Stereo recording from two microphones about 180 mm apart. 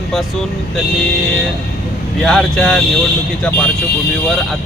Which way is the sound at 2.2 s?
5° left (ahead or behind).